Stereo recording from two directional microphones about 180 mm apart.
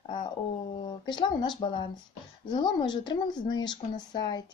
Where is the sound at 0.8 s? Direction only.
25° left (ahead or behind).